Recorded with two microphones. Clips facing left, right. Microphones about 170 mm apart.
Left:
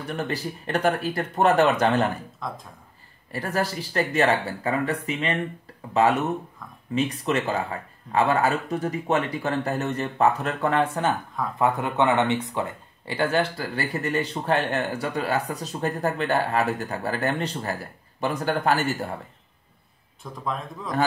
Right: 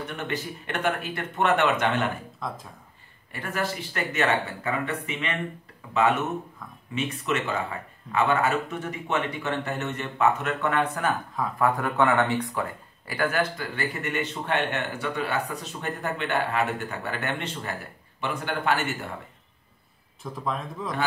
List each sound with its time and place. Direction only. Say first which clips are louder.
0.0 s speech: left 3 dB; 35° left (ahead or behind)
2.4 s a man's voice: right 1 dB; centre (ahead or behind)
3.3 s speech: left 3 dB; 35° left (ahead or behind)
7.0 s speech: left 3 dB; 35° left (ahead or behind)
20.2 s a man's voice: even; centre (ahead or behind)